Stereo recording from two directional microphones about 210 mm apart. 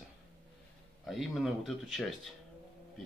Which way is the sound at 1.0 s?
Centre (ahead or behind).